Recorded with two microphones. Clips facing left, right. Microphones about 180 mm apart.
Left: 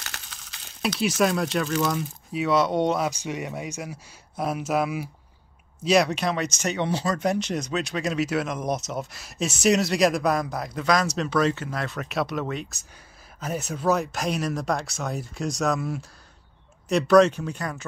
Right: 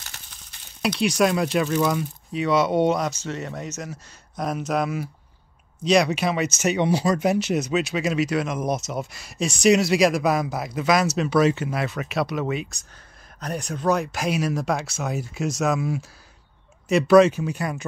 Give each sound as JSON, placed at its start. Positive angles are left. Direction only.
{"t": 0.0, "sound": "a sound", "side_deg": 90}
{"t": 0.8, "sound": "speech", "side_deg": 0}
{"t": 3.1, "sound": "speech", "side_deg": 15}